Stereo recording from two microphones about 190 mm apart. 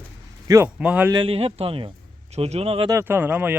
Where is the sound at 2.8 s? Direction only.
15° right (ahead or behind).